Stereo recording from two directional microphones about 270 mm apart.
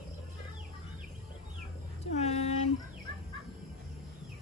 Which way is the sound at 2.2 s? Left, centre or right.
Left.